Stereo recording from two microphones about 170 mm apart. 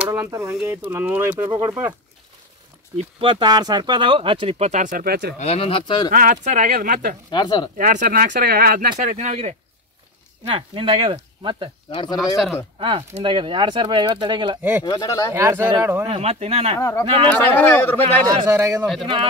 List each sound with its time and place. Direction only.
0.0 s speech: 15° right (ahead or behind)
3.0 s speech: 30° right (ahead or behind); by 5.3 s 65° right (ahead or behind)
5.4 s speech: 35° left (ahead or behind)
6.1 s speech: 50° right (ahead or behind)
7.2 s speech: 25° left (ahead or behind)
7.7 s speech: 50° right (ahead or behind); by 11.7 s 30° right (ahead or behind)
11.9 s speech: 30° left (ahead or behind)
12.7 s speech: 30° right (ahead or behind)
14.8 s speech: 25° left (ahead or behind)
15.3 s speech: 15° right (ahead or behind)
16.1 s speech: 40° right (ahead or behind)
16.7 s speech: 15° left (ahead or behind)
18.5 s speech: 15° right (ahead or behind)